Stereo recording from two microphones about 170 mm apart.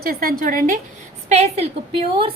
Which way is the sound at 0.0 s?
60° right (ahead or behind).